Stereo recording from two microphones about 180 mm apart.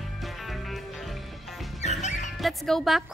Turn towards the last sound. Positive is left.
turn(degrees=0)  # may be behind; listen again after turning